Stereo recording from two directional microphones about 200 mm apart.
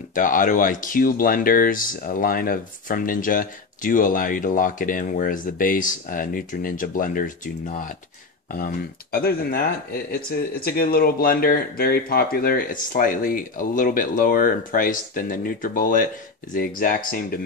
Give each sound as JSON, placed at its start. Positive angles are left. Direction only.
{"t": 0.1, "sound": "speech", "side_deg": 40}